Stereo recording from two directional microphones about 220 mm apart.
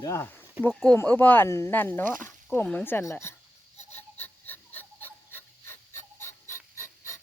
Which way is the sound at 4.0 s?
10° left (ahead or behind).